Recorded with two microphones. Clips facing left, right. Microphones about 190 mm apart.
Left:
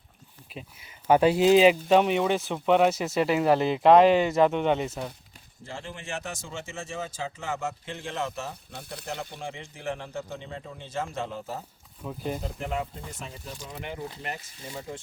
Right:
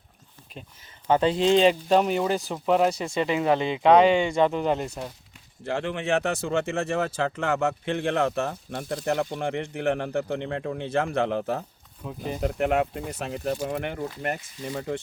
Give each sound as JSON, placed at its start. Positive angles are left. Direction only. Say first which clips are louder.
{"t": 0.5, "sound": "speech", "louder": "left 1 dB", "side_deg": 5}
{"t": 5.6, "sound": "speech", "louder": "right 11 dB", "side_deg": -65}
{"t": 12.0, "sound": "speech", "louder": "even", "side_deg": 0}
{"t": 12.4, "sound": "speech", "louder": "right 9 dB", "side_deg": -65}
{"t": 14.7, "sound": "speech", "louder": "right 7 dB", "side_deg": -65}